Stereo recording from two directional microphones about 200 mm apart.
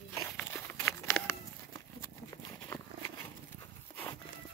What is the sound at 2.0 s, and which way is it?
Horse, 15° left (ahead or behind).